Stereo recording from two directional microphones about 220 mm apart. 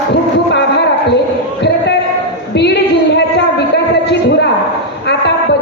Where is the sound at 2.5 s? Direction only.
50° left (ahead or behind).